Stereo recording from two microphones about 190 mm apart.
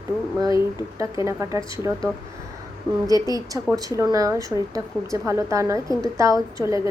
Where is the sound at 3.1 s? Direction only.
20° right (ahead or behind).